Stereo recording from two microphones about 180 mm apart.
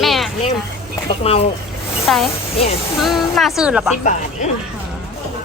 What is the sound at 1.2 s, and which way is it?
Speech, 30° left (ahead or behind).